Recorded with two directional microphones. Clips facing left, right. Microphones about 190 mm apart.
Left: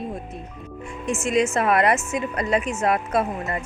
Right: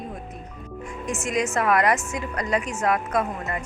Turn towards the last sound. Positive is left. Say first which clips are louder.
# left 2 dB
turn(degrees=25)  # may be behind; listen again after turning